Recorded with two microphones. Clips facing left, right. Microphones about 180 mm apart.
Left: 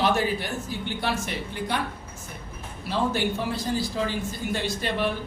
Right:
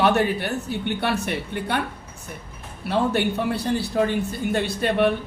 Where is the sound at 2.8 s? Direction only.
60° right (ahead or behind).